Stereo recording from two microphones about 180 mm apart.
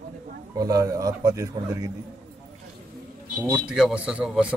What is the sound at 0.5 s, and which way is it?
Speech, 20° right (ahead or behind).